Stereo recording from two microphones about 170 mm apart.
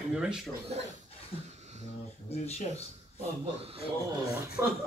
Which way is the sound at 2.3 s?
40° left (ahead or behind).